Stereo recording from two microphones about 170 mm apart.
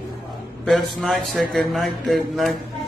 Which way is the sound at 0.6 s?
Centre (ahead or behind).